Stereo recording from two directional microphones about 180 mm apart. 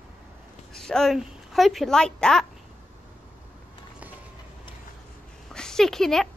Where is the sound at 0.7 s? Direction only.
5° left (ahead or behind).